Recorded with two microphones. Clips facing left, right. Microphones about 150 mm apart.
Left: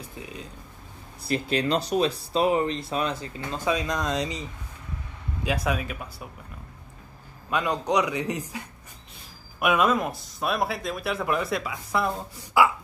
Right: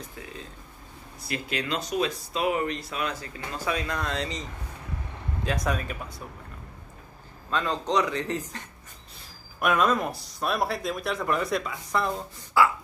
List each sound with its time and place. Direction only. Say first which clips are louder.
1.2 s a man's voice: left 6 dB; 30° left (ahead or behind); by 6.2 s 5° left (ahead or behind)
7.4 s a man's voice: left 2 dB; 15° left (ahead or behind)
12.6 s a sound: left 1 dB; 15° left (ahead or behind)